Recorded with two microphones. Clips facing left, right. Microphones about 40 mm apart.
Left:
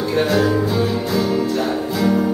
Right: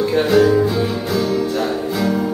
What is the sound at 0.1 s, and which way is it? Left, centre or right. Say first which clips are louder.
Music: right 3 dB; centre.